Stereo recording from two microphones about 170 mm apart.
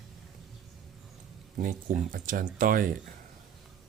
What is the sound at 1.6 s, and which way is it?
Speech, 50° right (ahead or behind).